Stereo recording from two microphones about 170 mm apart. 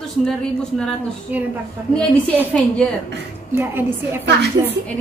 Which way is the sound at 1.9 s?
5° left (ahead or behind).